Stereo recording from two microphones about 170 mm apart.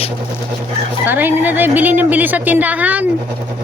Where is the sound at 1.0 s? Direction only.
10° right (ahead or behind).